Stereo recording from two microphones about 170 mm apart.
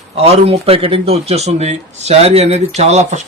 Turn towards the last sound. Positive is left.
turn(degrees=-40)  # may be behind; listen again after turning